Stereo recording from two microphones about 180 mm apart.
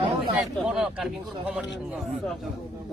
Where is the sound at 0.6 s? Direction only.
5° right (ahead or behind).